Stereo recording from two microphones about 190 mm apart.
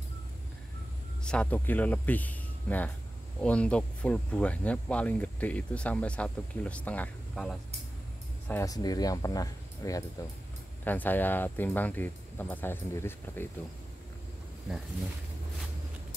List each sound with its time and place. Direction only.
1.2 s speech: 5° left (ahead or behind)
8.5 s speech: 15° left (ahead or behind)